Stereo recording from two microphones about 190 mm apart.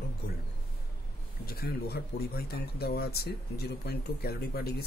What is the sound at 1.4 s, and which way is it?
Speech, 55° left (ahead or behind).